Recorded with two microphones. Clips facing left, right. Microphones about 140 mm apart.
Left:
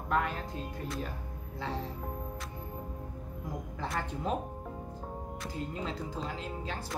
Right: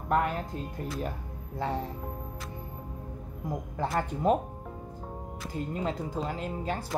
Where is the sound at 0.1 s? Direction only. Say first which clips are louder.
Right 4 dB; 50° right (ahead or behind).